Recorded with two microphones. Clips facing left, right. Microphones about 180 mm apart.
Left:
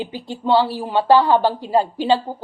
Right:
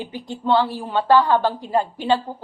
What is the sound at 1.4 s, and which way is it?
Speech, 30° left (ahead or behind).